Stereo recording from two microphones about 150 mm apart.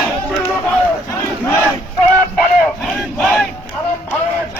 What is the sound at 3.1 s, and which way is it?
Battle cry, centre (ahead or behind).